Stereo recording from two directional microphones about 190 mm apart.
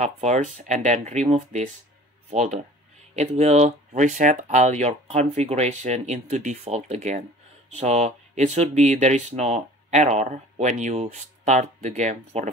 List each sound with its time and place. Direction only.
0.0 s speech: 40° right (ahead or behind)